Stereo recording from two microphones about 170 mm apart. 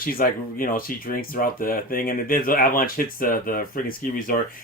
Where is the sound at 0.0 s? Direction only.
60° left (ahead or behind).